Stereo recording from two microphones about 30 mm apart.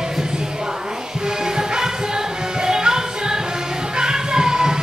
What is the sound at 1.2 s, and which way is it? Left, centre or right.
Music, right.